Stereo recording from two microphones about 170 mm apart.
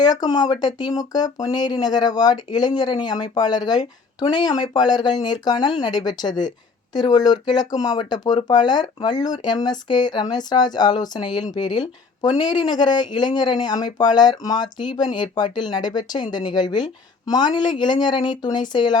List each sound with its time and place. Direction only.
0.0 s speech: 25° left (ahead or behind)